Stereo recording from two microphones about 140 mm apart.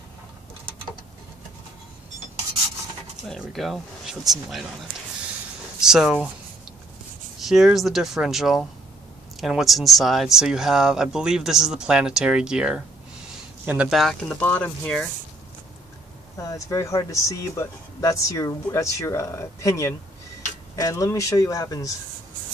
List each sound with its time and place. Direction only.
3.2 s speech: centre (ahead or behind)
5.8 s speech: 5° right (ahead or behind)
7.3 s speech: centre (ahead or behind)
14.4 s speech: 15° left (ahead or behind)
16.3 s speech: 25° left (ahead or behind)